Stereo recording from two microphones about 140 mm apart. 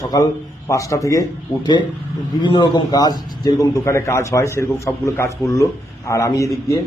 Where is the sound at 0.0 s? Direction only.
25° left (ahead or behind).